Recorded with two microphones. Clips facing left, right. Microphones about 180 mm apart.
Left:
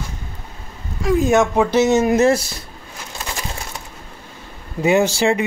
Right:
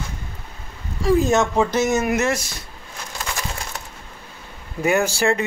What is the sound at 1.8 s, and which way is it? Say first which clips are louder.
Speech: left 5 dB; 20° left (ahead or behind).